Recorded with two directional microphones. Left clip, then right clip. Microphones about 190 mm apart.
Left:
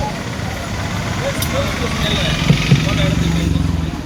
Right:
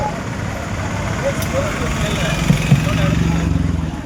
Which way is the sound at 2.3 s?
55° right (ahead or behind).